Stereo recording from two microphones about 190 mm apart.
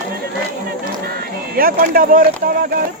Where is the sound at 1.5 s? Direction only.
50° right (ahead or behind).